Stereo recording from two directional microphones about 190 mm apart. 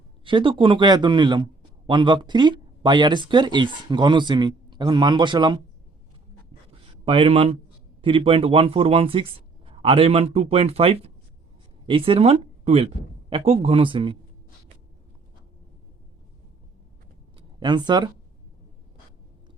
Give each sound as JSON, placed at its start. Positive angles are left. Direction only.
{"t": 0.3, "sound": "speech", "side_deg": -25}
{"t": 6.8, "sound": "speech", "side_deg": -25}
{"t": 17.3, "sound": "a sound", "side_deg": -25}